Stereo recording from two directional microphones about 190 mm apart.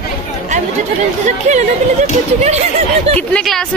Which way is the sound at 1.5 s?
40° right (ahead or behind).